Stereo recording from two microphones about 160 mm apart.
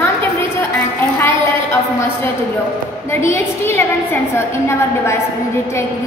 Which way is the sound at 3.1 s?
15° left (ahead or behind).